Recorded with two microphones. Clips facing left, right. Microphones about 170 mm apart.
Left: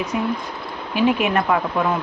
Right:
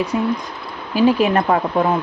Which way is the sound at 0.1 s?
30° right (ahead or behind).